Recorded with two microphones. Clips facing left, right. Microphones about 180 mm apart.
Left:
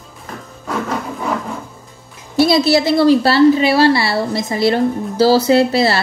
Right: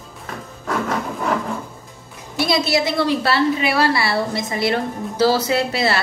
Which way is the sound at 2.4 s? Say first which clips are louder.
Left 6 dB; 35° left (ahead or behind).